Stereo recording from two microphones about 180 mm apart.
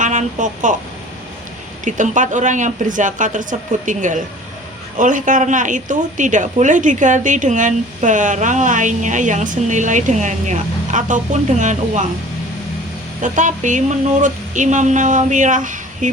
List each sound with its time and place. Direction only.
0.0 s a woman's voice: 45° right (ahead or behind)
1.8 s a woman's voice: 45° right (ahead or behind)
13.2 s a woman's voice: 45° right (ahead or behind)